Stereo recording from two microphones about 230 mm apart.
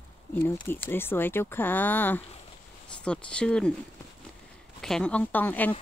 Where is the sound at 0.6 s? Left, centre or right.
Centre.